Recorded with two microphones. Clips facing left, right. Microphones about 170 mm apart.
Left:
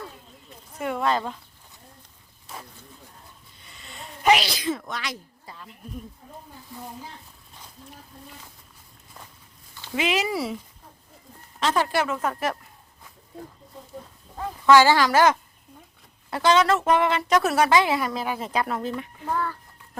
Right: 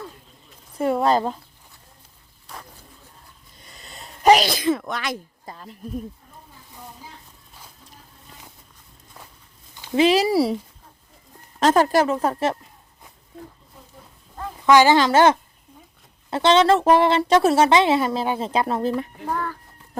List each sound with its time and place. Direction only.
0.8 s speech: 35° right (ahead or behind)
2.5 s bird: centre (ahead or behind)
3.6 s sneeze: 40° right (ahead or behind)
4.8 s a woman's voice: 55° right (ahead or behind)
9.9 s speech: 35° right (ahead or behind)
11.6 s speech: 45° right (ahead or behind)
14.7 s a woman's voice: 20° right (ahead or behind); by 19.0 s 35° right (ahead or behind)
19.2 s a child's voice: 10° right (ahead or behind)